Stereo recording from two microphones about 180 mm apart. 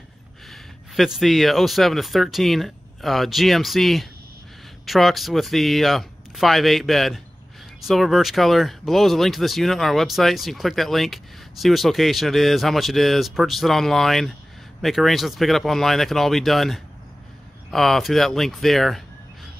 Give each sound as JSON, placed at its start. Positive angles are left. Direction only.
{"t": 0.5, "sound": "speech", "side_deg": 0}